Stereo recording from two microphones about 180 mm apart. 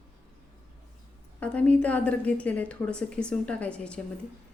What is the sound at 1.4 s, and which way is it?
A woman's voice, 10° left (ahead or behind).